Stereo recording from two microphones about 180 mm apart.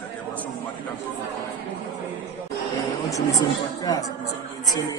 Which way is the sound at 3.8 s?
20° left (ahead or behind).